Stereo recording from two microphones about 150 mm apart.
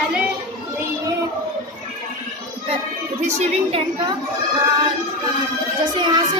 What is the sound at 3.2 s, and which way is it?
Speech, 40° right (ahead or behind).